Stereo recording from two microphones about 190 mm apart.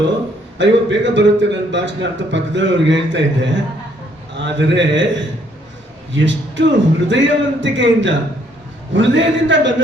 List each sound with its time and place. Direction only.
0.6 s a man's voice: 70° right (ahead or behind)